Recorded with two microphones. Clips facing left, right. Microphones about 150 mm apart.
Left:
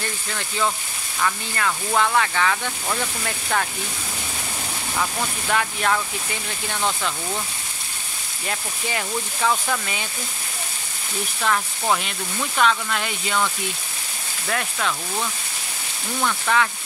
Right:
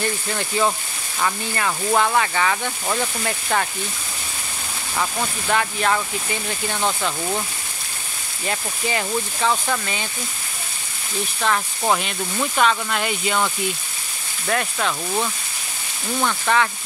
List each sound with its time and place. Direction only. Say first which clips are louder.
0.3 s speech: right 2 dB; 20° right (ahead or behind); by 3.6 s 5° right (ahead or behind)
5.5 s speech: right 2 dB; centre (ahead or behind)
8.5 s speech: right 3 dB; centre (ahead or behind)
11.5 s speech: right 1 dB; centre (ahead or behind)
12.6 s speech: left 1 dB; 5° right (ahead or behind)
14.5 s speech: right 3 dB; 5° right (ahead or behind)